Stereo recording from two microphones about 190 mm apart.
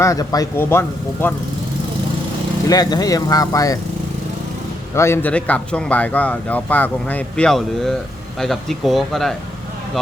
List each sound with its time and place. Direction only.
0.0 s speech: 15° left (ahead or behind)
2.6 s speech: 20° left (ahead or behind)
4.9 s speech: 15° left (ahead or behind)